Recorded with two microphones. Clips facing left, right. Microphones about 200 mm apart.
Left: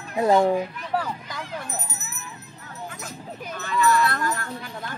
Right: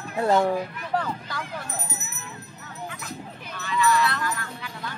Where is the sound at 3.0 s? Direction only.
45° left (ahead or behind).